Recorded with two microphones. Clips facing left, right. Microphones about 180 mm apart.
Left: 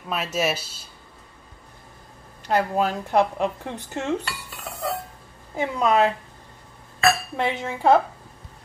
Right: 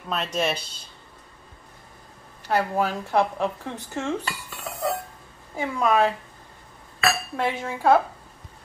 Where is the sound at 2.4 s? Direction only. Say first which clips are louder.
Left 2 dB; 15° left (ahead or behind).